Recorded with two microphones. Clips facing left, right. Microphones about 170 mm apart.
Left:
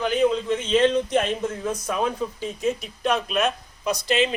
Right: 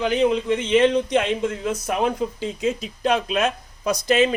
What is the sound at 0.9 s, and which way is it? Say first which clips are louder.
Speech: right 2 dB; 75° right (ahead or behind).